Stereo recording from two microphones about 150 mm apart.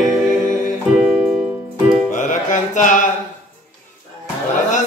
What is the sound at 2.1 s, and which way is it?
Music, 55° left (ahead or behind).